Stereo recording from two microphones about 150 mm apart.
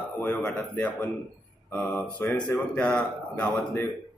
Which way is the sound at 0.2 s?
10° left (ahead or behind).